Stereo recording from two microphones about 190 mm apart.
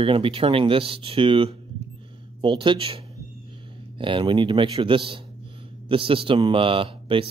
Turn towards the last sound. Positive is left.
turn(degrees=-30)  # may be behind; listen again after turning